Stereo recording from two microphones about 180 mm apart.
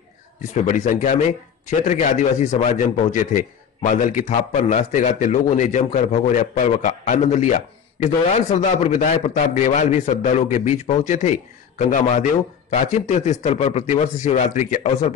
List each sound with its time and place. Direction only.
0.7 s a man's voice: 45° left (ahead or behind)